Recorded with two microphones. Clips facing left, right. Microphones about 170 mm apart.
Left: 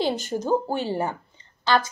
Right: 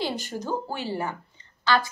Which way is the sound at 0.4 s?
25° left (ahead or behind).